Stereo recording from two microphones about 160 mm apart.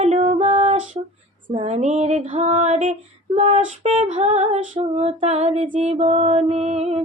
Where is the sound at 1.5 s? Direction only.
40° right (ahead or behind).